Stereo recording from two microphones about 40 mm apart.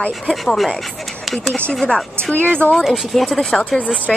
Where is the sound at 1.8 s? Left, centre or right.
Left.